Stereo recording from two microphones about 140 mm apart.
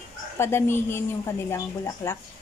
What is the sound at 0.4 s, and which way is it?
Speech, 20° left (ahead or behind).